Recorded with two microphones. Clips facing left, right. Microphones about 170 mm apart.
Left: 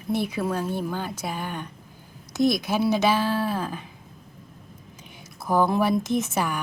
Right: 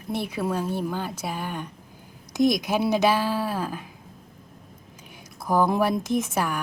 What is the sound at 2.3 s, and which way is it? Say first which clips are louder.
Speech: right 1 dB; 15° right (ahead or behind).